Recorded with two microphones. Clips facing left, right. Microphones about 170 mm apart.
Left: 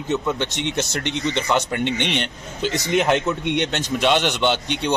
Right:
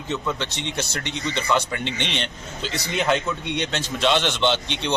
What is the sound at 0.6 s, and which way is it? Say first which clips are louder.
Speech: left 5 dB; 60° left (ahead or behind).